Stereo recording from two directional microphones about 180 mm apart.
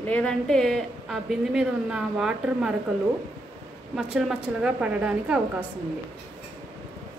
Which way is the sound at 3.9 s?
Centre (ahead or behind).